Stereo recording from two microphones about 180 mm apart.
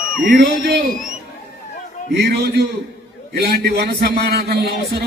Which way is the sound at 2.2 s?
65° right (ahead or behind).